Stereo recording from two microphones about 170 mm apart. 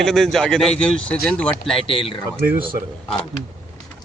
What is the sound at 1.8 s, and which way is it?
Speech, 35° left (ahead or behind).